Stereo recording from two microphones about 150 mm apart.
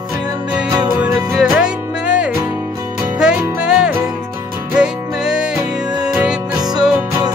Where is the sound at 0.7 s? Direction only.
30° right (ahead or behind).